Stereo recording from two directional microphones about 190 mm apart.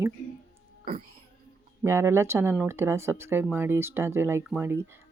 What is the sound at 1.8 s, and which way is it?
Speech, 15° right (ahead or behind).